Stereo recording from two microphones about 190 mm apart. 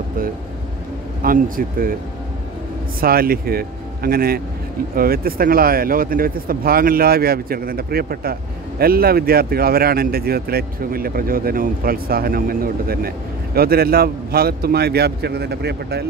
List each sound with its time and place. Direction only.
1.2 s speech: 50° right (ahead or behind)
3.0 s a man's voice: 50° right (ahead or behind)